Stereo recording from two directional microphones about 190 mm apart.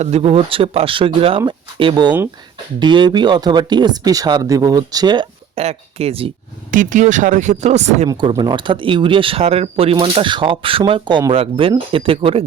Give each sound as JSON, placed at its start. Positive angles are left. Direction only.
{"t": 0.0, "sound": "speech", "side_deg": -35}
{"t": 6.7, "sound": "speech", "side_deg": -45}
{"t": 8.3, "sound": "speech", "side_deg": -25}